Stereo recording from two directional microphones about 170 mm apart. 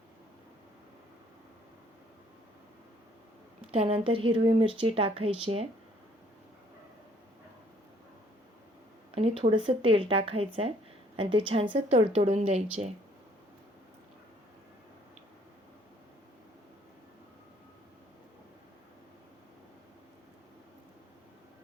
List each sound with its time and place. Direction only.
3.7 s speech: 35° right (ahead or behind)
9.1 s speech: 35° right (ahead or behind)